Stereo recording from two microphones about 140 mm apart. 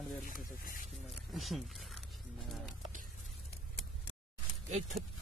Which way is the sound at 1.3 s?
Centre (ahead or behind).